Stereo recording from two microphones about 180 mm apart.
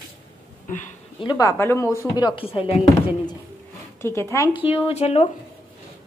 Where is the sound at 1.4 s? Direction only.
15° left (ahead or behind).